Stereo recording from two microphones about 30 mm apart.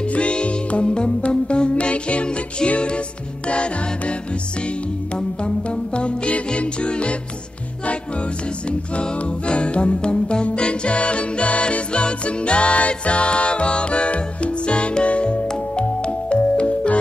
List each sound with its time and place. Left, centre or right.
0.0 s music: left
9.2 s music: left
15.4 s music: left